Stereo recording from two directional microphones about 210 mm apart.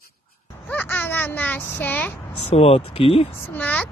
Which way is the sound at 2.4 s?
30° left (ahead or behind).